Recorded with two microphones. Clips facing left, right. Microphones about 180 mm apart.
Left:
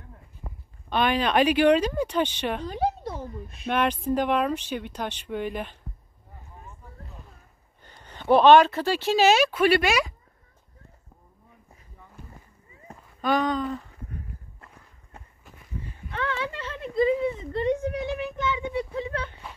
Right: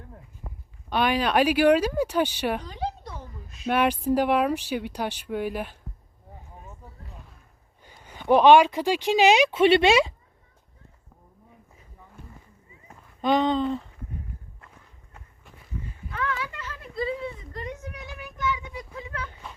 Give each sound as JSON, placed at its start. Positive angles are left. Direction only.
{"t": 0.8, "sound": "speech", "side_deg": -10}
{"t": 3.1, "sound": "a sound", "side_deg": 30}
{"t": 3.6, "sound": "speech", "side_deg": -10}
{"t": 7.8, "sound": "speech", "side_deg": -10}
{"t": 13.2, "sound": "speech", "side_deg": -20}
{"t": 16.1, "sound": "speech", "side_deg": 30}